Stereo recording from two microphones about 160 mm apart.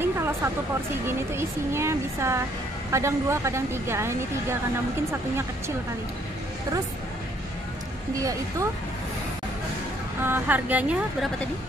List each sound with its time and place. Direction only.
0.0 s a sound: 15° right (ahead or behind)
1.0 s a woman's voice: 15° right (ahead or behind)
8.2 s speech: 20° right (ahead or behind)
10.2 s a woman's voice: 10° right (ahead or behind)